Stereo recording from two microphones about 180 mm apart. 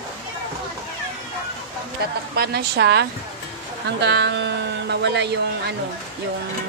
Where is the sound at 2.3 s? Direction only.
65° right (ahead or behind).